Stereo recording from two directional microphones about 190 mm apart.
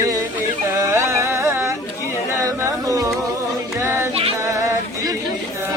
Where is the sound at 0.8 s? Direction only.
15° right (ahead or behind).